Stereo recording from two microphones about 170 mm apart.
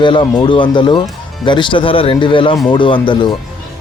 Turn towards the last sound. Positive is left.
turn(degrees=30)  # may be behind; listen again after turning